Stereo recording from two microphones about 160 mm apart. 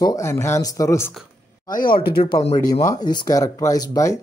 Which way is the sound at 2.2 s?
35° left (ahead or behind).